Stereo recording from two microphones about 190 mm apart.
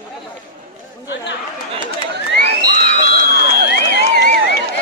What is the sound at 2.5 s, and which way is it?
Music, 55° right (ahead or behind).